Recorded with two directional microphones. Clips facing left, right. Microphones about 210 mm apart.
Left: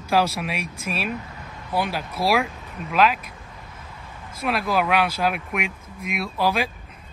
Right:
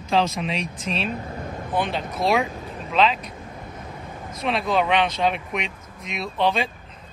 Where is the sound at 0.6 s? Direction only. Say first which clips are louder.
Right 1 dB; 30° right (ahead or behind).